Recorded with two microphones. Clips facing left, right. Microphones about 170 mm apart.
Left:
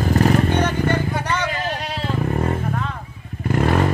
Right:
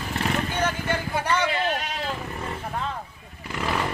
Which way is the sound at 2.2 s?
50° left (ahead or behind).